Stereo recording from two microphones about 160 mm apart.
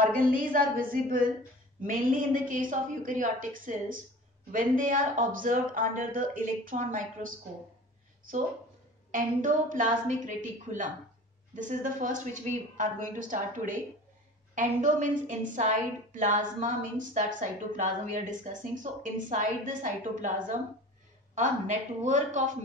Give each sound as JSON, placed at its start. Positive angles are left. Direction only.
{"t": 0.0, "sound": "speech", "side_deg": -60}
{"t": 9.1, "sound": "a woman's voice", "side_deg": -55}